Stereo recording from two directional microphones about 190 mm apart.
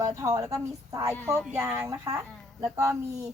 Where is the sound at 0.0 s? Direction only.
15° right (ahead or behind).